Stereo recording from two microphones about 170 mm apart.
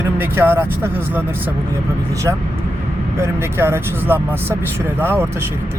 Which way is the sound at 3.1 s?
15° right (ahead or behind).